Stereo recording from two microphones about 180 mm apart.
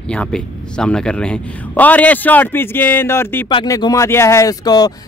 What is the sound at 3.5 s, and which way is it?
Speech, 25° left (ahead or behind).